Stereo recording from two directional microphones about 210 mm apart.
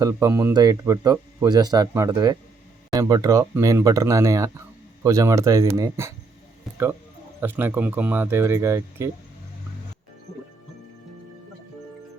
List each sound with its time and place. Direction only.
0.0 s speech: 15° right (ahead or behind)
7.4 s speech: 10° right (ahead or behind)